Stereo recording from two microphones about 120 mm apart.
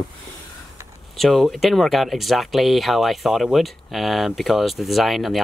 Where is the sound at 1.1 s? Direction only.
Centre (ahead or behind).